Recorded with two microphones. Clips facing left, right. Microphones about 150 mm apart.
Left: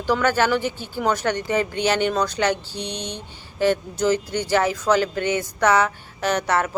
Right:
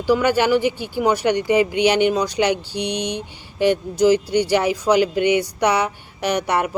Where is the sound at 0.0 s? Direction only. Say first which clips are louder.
Right 3 dB; 10° right (ahead or behind).